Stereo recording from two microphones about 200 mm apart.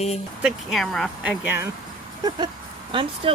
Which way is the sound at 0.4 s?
Centre (ahead or behind).